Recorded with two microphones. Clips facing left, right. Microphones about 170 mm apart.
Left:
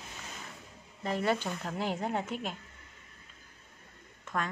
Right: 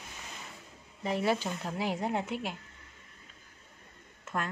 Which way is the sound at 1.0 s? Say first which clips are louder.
Right 1 dB; 10° right (ahead or behind).